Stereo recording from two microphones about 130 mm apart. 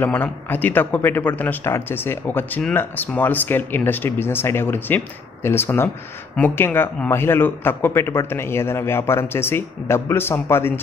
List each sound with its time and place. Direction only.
0.0 s speech: 15° left (ahead or behind)